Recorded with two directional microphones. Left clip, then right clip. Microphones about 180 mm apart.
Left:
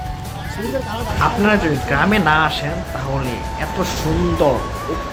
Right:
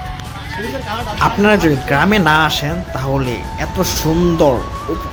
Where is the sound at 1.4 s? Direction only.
40° right (ahead or behind).